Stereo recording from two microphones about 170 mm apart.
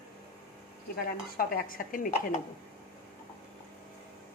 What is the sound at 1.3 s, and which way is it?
Speech, 55° left (ahead or behind).